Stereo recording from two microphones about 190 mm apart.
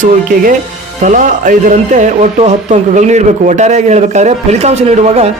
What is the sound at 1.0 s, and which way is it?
Speech, 45° right (ahead or behind).